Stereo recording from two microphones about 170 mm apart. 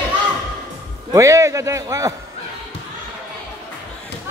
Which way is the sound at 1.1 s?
20° right (ahead or behind).